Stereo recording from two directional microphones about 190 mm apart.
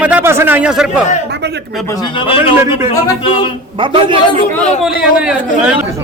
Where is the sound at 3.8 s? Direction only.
25° right (ahead or behind).